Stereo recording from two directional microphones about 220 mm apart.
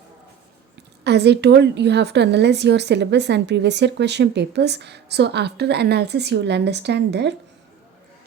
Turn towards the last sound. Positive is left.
turn(degrees=-50)  # may be behind; listen again after turning